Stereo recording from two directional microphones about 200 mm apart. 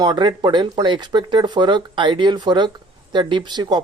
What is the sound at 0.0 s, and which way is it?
Speech, 20° right (ahead or behind).